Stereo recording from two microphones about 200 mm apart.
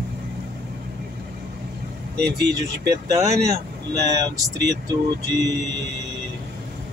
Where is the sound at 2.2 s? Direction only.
55° right (ahead or behind).